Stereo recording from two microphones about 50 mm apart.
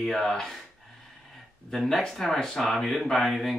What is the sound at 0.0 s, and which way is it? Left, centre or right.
Speech, centre.